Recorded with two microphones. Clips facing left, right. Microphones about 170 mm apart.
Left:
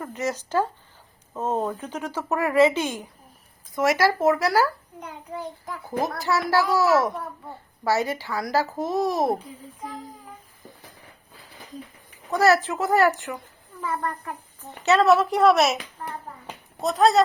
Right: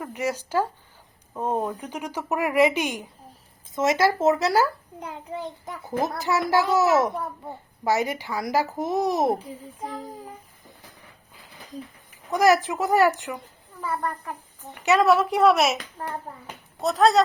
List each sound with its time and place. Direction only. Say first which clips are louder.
0.0 s a child's voice: even; 10° right (ahead or behind)
12.3 s speech: even; 15° right (ahead or behind)
14.7 s speech: left 1 dB; 10° right (ahead or behind)
16.8 s speech: even; centre (ahead or behind)